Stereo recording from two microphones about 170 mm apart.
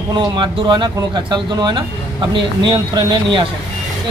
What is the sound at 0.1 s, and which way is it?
Speech, 25° right (ahead or behind).